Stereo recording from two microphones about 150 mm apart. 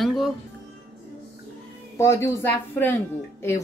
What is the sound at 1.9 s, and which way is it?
Speech, 20° left (ahead or behind).